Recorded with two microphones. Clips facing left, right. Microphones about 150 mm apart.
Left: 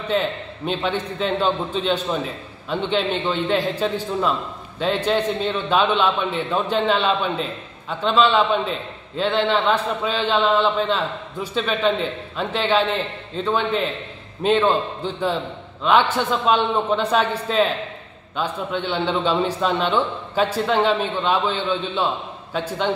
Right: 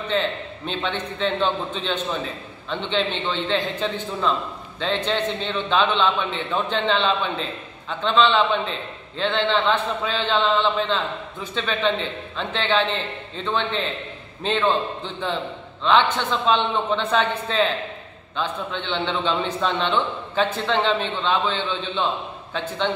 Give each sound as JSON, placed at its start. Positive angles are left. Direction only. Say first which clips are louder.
{"t": 0.1, "sound": "a man's voice", "louder": "left 2 dB", "side_deg": 10}
{"t": 15.8, "sound": "a man's voice", "louder": "left 1 dB", "side_deg": 10}